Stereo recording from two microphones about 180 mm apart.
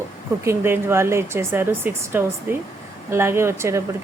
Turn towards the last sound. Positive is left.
turn(degrees=-15)  # may be behind; listen again after turning